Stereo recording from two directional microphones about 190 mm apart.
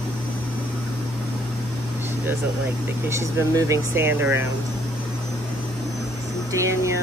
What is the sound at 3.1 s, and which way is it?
Speech, 15° right (ahead or behind).